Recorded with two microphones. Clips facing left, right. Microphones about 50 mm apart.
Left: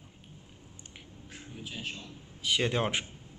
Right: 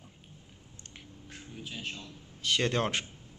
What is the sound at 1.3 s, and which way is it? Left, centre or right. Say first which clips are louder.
A man's voice: even; centre.